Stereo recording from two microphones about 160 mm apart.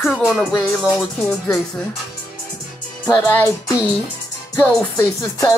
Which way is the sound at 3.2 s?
15° left (ahead or behind).